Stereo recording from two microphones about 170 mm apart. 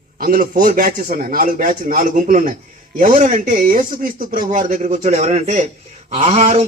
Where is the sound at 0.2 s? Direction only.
50° right (ahead or behind).